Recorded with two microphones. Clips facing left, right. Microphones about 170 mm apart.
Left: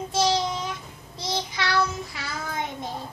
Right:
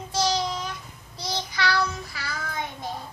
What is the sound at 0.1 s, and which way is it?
Child singing, 20° left (ahead or behind).